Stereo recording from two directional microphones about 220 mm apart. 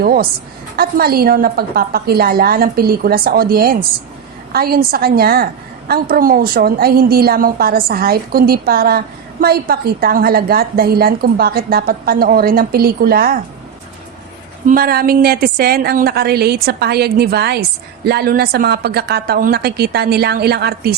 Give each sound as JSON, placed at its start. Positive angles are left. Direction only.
{"t": 0.0, "sound": "a woman's voice", "side_deg": -40}
{"t": 14.7, "sound": "a woman's voice", "side_deg": -40}